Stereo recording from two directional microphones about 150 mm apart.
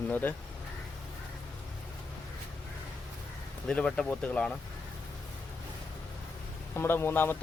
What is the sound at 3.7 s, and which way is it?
Speech, 5° left (ahead or behind).